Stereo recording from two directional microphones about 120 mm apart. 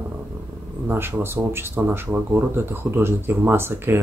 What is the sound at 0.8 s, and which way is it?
Speech, 20° right (ahead or behind).